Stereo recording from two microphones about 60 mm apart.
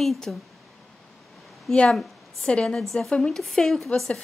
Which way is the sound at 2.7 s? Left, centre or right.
Centre.